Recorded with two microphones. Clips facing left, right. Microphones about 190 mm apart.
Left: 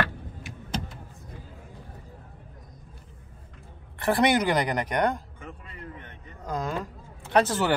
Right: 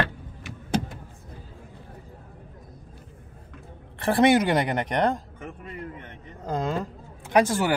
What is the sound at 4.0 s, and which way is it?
A woman's voice, 25° right (ahead or behind).